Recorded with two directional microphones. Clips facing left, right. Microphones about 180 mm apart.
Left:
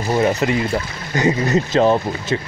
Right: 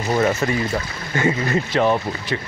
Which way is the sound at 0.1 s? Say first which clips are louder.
Left 2 dB; 15° left (ahead or behind).